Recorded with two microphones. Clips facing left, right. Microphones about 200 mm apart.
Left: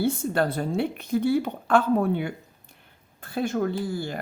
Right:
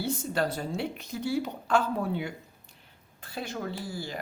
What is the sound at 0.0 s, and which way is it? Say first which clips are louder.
Speech: left 5 dB; 55° left (ahead or behind).